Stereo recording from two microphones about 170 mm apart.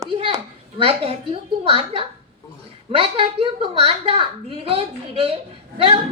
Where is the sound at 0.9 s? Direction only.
35° right (ahead or behind).